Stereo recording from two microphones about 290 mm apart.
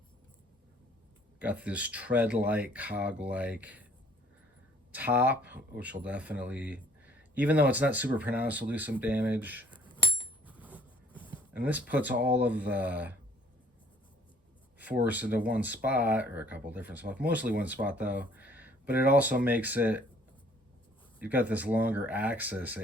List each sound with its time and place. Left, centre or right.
1.4 s speech: centre
4.9 s speech: centre
9.7 s bicycle bell: centre
10.4 s a sound: centre
11.1 s a sound: centre
11.5 s speech: centre
14.8 s speech: centre
21.2 s speech: centre